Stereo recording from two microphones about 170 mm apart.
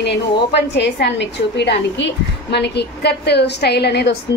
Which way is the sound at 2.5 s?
75° left (ahead or behind).